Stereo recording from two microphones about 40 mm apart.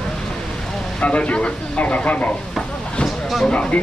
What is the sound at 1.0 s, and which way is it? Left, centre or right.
Speech, left.